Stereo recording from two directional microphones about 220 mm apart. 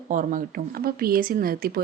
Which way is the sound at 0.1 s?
35° right (ahead or behind).